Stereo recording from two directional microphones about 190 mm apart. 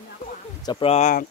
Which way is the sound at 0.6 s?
25° left (ahead or behind).